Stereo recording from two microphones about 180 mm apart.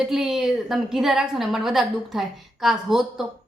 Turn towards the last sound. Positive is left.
turn(degrees=0)  # may be behind; listen again after turning